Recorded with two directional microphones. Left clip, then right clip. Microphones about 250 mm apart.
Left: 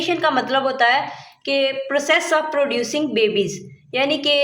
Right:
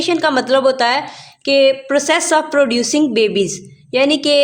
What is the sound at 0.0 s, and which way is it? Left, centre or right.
A woman's voice, right.